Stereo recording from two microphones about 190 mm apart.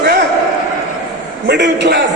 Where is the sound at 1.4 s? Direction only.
65° right (ahead or behind).